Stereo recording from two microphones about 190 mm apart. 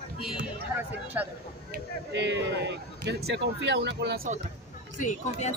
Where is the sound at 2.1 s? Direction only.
65° right (ahead or behind).